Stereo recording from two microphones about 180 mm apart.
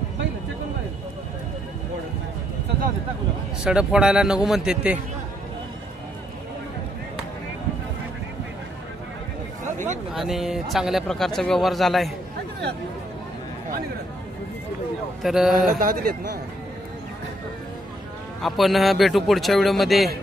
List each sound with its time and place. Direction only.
3.6 s a man's voice: 5° right (ahead or behind)
10.1 s a man's voice: centre (ahead or behind)
15.2 s a man's voice: centre (ahead or behind)
15.7 s speech: 50° right (ahead or behind)
18.4 s a man's voice: centre (ahead or behind)